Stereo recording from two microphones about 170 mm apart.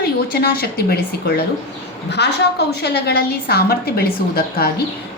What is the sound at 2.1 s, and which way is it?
A woman's voice, 80° left.